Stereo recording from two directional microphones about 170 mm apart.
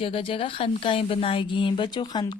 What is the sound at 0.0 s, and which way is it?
Speech, 30° left (ahead or behind).